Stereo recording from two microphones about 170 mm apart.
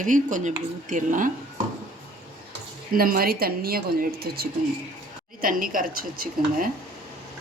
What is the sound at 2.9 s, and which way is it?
Speech, 60° right (ahead or behind).